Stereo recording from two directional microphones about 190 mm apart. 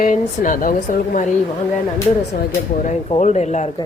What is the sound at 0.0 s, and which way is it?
Speech, 45° left (ahead or behind).